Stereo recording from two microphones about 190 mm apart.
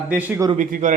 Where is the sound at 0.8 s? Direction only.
40° right (ahead or behind).